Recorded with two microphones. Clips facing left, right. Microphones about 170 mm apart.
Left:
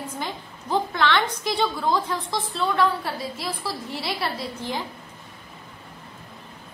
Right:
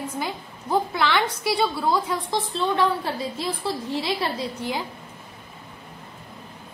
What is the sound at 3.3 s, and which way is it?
A woman's voice, 20° right (ahead or behind).